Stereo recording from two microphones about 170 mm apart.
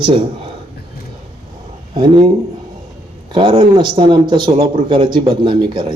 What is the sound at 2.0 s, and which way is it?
Speech, 30° right (ahead or behind).